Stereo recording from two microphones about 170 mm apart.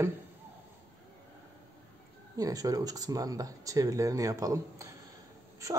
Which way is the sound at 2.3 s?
20° right (ahead or behind).